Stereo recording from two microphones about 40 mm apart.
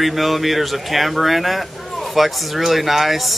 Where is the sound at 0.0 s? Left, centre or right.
Centre.